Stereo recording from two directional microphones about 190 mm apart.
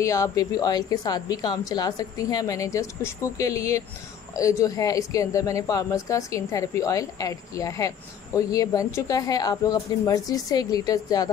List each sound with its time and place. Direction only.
0.0 s a woman's voice: 15° left (ahead or behind)